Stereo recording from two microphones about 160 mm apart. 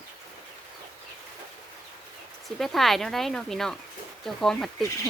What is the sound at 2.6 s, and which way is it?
Speech, centre (ahead or behind).